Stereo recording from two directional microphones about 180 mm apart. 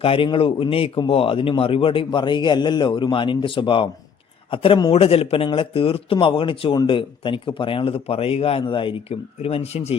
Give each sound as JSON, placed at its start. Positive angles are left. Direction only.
{"t": 0.0, "sound": "a man's voice", "side_deg": 30}